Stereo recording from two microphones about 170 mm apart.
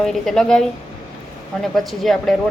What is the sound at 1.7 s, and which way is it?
Speech, centre (ahead or behind).